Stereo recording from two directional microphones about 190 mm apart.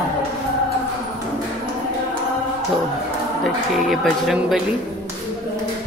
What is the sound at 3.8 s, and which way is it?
Speech, centre (ahead or behind).